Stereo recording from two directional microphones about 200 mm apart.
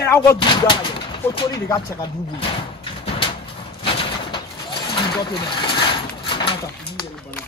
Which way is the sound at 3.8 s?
25° left (ahead or behind).